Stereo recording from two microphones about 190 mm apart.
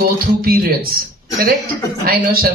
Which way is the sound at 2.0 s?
50° right (ahead or behind).